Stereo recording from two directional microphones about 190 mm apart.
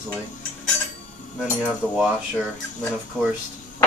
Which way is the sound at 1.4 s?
Centre (ahead or behind).